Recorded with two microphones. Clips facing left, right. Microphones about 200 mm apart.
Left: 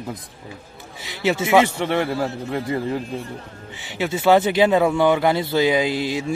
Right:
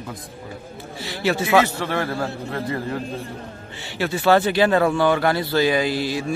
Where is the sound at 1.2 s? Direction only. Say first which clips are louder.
Left 1 dB; 20° left (ahead or behind).